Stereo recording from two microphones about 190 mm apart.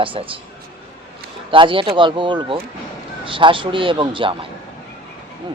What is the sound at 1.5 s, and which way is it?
A man's voice, 25° right (ahead or behind).